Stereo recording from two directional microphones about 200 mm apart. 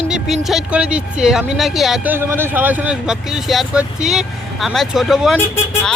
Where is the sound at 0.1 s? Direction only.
Centre (ahead or behind).